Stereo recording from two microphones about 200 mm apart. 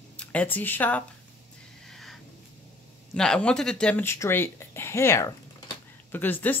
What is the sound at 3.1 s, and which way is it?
Speech, 5° left (ahead or behind).